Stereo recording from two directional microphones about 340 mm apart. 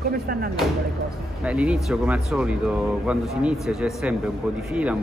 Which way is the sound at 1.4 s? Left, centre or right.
Centre.